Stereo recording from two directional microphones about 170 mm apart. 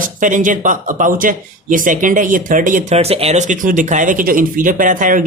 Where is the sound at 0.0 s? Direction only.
50° right (ahead or behind).